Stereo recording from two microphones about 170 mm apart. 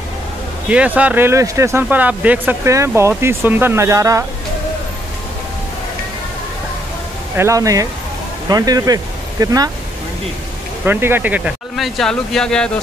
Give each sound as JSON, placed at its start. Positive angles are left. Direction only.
{"t": 0.7, "sound": "speech", "side_deg": -10}
{"t": 7.3, "sound": "speech", "side_deg": -20}
{"t": 10.9, "sound": "speech", "side_deg": -10}